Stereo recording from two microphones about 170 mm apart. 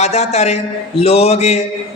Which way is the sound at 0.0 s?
40° left (ahead or behind).